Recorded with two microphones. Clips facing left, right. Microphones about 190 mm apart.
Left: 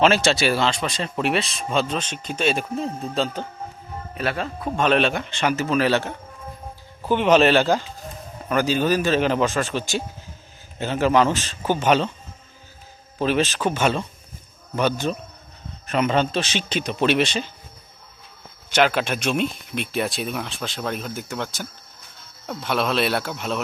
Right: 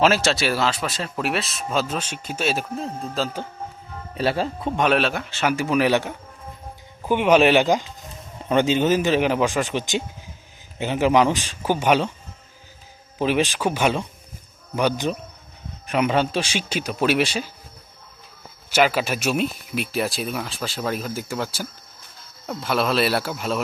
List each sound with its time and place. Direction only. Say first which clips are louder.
0.0 s speech: left 1 dB; 5° right (ahead or behind)
4.1 s speech: right 4 dB; 30° right (ahead or behind)
4.8 s speech: left 1 dB; 5° right (ahead or behind)
13.1 s speech: even; 15° right (ahead or behind)
18.7 s speech: even; 5° right (ahead or behind)